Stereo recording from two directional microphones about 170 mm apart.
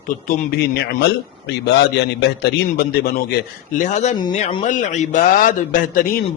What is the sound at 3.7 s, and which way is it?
A man's voice, 50° left (ahead or behind).